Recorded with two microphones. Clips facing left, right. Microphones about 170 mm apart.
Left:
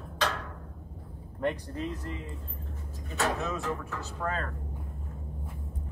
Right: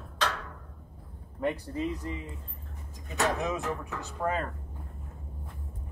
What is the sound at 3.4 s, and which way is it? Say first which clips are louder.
Speech: right 1 dB; 20° right (ahead or behind).